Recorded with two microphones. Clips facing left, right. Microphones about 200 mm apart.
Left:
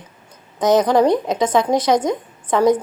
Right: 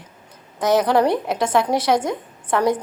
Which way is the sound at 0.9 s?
15° left (ahead or behind).